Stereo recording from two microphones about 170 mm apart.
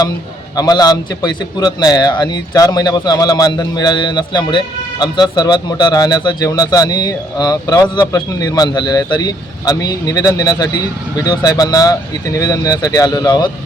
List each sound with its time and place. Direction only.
0.5 s a man's voice: 20° left (ahead or behind)